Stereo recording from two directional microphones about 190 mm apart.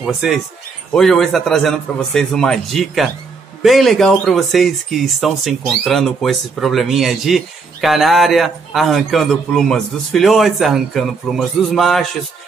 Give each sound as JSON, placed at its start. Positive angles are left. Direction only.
{"t": 0.0, "sound": "speech", "side_deg": 0}